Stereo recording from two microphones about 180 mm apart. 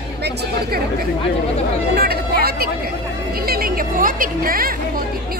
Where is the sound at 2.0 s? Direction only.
60° right (ahead or behind).